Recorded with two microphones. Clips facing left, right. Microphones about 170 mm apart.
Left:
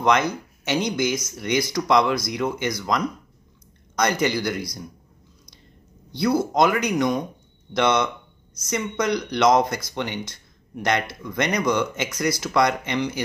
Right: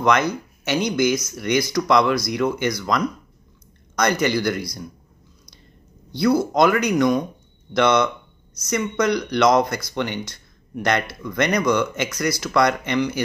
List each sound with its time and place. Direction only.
0.7 s speech: 20° left (ahead or behind)
6.1 s speech: 20° left (ahead or behind)